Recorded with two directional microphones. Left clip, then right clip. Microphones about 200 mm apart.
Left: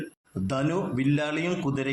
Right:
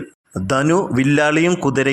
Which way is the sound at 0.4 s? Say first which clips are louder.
Right 11 dB; 45° right (ahead or behind).